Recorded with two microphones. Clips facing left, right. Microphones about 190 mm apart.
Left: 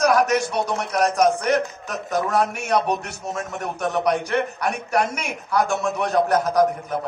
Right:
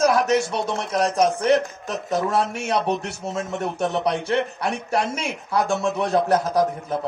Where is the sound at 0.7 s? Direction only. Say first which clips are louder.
Left 1 dB; 25° right (ahead or behind).